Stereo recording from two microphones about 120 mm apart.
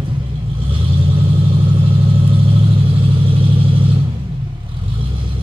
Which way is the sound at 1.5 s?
45° right (ahead or behind).